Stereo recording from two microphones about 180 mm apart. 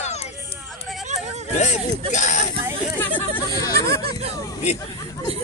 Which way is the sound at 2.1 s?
45° left (ahead or behind).